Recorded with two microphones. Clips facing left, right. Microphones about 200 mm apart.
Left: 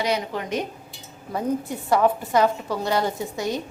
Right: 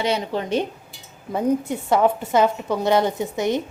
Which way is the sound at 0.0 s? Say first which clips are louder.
Right 2 dB; 25° right (ahead or behind).